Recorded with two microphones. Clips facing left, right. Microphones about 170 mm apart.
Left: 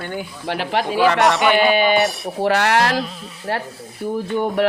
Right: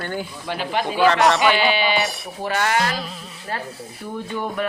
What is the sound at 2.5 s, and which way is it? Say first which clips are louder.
Speech: left 4 dB; 70° left (ahead or behind).